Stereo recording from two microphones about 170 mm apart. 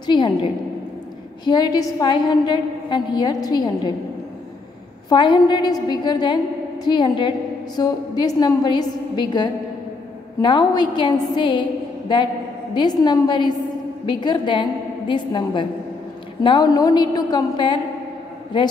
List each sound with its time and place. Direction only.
0.0 s a woman's voice: 25° left (ahead or behind)
5.1 s a woman's voice: 30° left (ahead or behind)
12.7 s a woman's voice: 25° left (ahead or behind)